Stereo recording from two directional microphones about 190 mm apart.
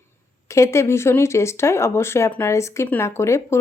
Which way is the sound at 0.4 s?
15° left (ahead or behind).